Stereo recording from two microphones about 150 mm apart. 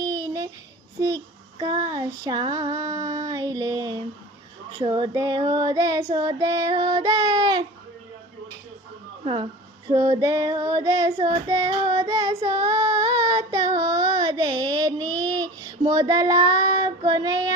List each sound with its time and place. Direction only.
0.0 s a sound: 25° right (ahead or behind)
0.9 s child singing: 25° right (ahead or behind)
9.2 s speech: 35° right (ahead or behind)
9.9 s child singing: 25° right (ahead or behind)